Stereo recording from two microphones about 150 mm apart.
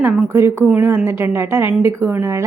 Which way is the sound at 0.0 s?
5° right (ahead or behind).